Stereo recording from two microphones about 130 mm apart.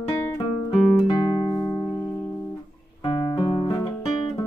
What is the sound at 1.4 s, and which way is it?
Music, 35° left (ahead or behind).